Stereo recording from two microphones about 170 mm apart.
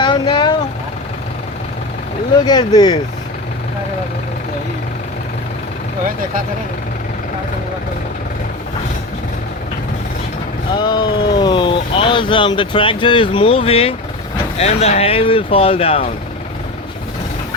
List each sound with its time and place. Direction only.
0.0 s vehicle: 25° left (ahead or behind)
2.4 s speech: 25° left (ahead or behind)
10.8 s speech: 25° left (ahead or behind)